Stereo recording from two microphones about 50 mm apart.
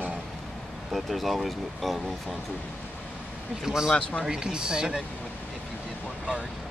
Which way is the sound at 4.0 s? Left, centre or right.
Left.